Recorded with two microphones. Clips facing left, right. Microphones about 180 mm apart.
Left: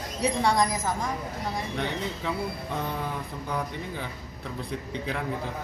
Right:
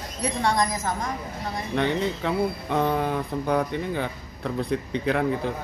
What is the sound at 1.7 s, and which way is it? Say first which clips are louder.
Speech: right 7 dB; 65° right (ahead or behind).